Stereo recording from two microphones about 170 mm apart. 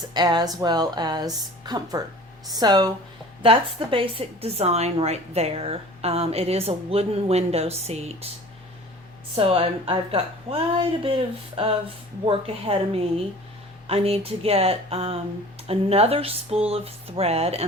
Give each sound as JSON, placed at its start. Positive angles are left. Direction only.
{"t": 0.1, "sound": "a woman's voice", "side_deg": -25}
{"t": 9.3, "sound": "a woman's voice", "side_deg": -35}